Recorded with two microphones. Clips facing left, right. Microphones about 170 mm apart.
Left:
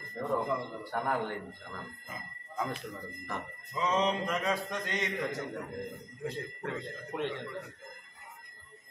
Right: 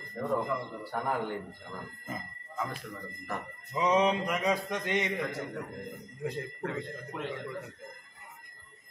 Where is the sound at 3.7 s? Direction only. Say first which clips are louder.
Right 4 dB; 15° right (ahead or behind).